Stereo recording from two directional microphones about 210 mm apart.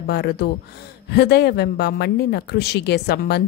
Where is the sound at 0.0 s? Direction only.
50° left (ahead or behind).